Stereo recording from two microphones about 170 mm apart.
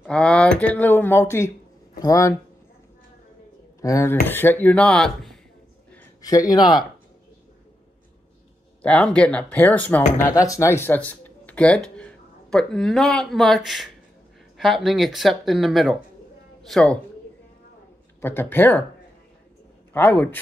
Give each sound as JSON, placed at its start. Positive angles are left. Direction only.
{"t": 0.0, "sound": "speech", "side_deg": 5}
{"t": 3.8, "sound": "speech", "side_deg": 15}
{"t": 5.9, "sound": "speech", "side_deg": 20}
{"t": 8.8, "sound": "speech", "side_deg": 5}
{"t": 18.2, "sound": "speech", "side_deg": 10}
{"t": 19.9, "sound": "speech", "side_deg": 10}